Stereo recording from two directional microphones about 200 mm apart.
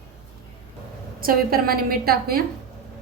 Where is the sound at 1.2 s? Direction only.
45° right (ahead or behind).